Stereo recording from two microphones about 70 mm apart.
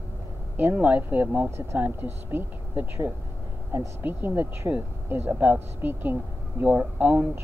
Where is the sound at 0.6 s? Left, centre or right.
Right.